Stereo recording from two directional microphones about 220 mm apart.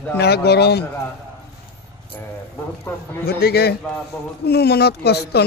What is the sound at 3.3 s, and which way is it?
Speech, 45° left (ahead or behind).